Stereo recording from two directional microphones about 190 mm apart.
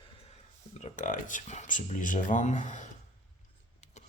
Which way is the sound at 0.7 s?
40° left (ahead or behind).